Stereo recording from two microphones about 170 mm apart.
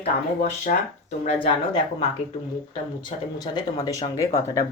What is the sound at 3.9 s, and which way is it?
Speech, 20° left (ahead or behind).